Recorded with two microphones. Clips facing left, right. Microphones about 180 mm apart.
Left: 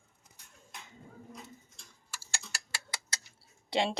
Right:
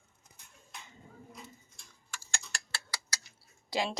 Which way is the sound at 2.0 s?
5° left (ahead or behind).